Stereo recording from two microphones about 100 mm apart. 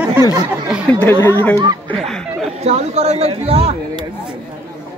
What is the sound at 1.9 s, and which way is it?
Speech, 5° left (ahead or behind).